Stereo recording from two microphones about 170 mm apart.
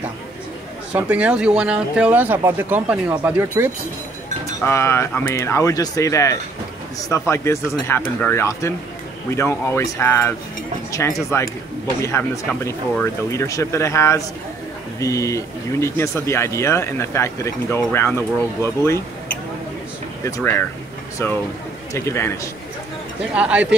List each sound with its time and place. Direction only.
0.9 s speech: 10° right (ahead or behind)
4.6 s speech: 15° left (ahead or behind)
20.2 s speech: 15° left (ahead or behind)
23.3 s speech: 5° right (ahead or behind)